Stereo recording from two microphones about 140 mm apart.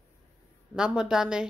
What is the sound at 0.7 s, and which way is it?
Speech, 5° right (ahead or behind).